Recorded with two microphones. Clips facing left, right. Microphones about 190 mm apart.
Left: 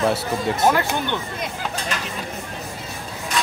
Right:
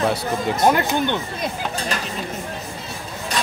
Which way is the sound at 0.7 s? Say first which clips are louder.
Right 1 dB; 20° right (ahead or behind).